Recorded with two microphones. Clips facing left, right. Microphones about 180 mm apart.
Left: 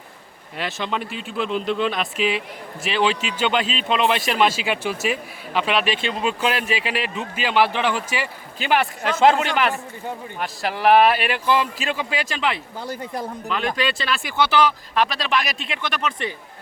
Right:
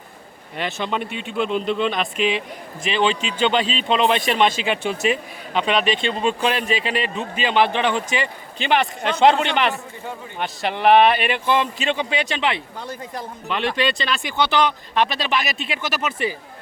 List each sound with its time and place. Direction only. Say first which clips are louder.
0.5 s speech: right 2 dB; centre (ahead or behind)